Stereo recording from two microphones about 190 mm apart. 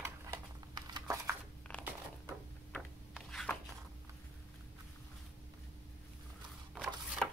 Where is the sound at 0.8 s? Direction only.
20° right (ahead or behind).